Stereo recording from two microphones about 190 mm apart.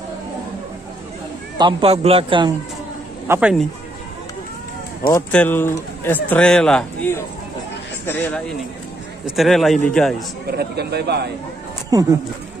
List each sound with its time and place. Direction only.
1.6 s speech: 25° right (ahead or behind)
3.3 s speech: 5° right (ahead or behind)
5.3 s speech: 10° left (ahead or behind)
9.2 s a man's voice: centre (ahead or behind)
10.6 s speech: 60° right (ahead or behind)
11.9 s speech: 20° right (ahead or behind)